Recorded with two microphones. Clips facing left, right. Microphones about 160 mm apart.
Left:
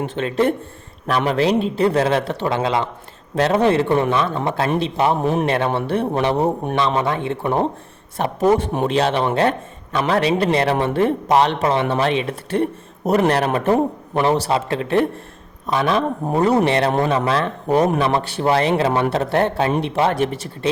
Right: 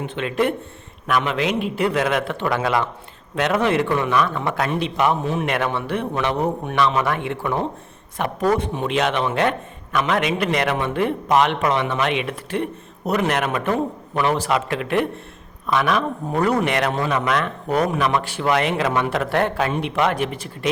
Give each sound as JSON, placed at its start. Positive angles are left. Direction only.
{"t": 0.0, "sound": "a man's voice", "side_deg": 35}
{"t": 5.2, "sound": "a man's voice", "side_deg": 55}
{"t": 5.5, "sound": "a man's voice", "side_deg": 30}
{"t": 7.3, "sound": "a man's voice", "side_deg": 35}
{"t": 8.2, "sound": "a man's voice", "side_deg": 25}
{"t": 8.8, "sound": "a man's voice", "side_deg": 35}